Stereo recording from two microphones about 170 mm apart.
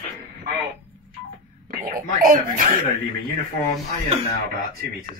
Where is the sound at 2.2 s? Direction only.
55° right (ahead or behind).